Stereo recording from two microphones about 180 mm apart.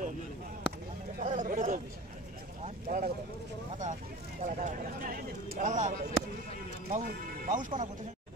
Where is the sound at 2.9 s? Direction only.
50° right (ahead or behind).